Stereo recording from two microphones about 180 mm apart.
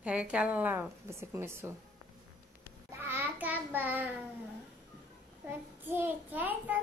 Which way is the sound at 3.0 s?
10° right (ahead or behind).